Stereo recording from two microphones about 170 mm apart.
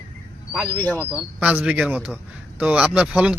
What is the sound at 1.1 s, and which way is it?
Speech, 5° right (ahead or behind).